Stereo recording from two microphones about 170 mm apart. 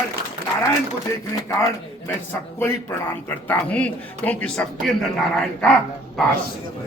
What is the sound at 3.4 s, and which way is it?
Speech, 10° left (ahead or behind).